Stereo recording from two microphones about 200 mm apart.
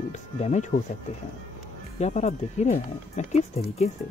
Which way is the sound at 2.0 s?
35° left (ahead or behind).